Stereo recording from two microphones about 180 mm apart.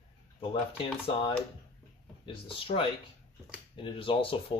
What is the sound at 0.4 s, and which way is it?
Speech, 30° left (ahead or behind).